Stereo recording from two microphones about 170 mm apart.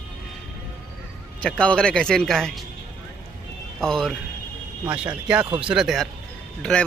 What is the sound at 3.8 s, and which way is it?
Speech, 5° left (ahead or behind).